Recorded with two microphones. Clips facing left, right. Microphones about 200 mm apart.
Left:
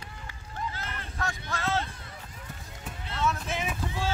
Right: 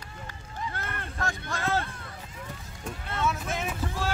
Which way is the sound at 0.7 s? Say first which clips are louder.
Right 2 dB; 55° right (ahead or behind).